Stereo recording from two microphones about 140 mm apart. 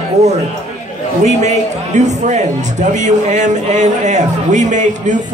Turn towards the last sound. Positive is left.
turn(degrees=-60)  # may be behind; listen again after turning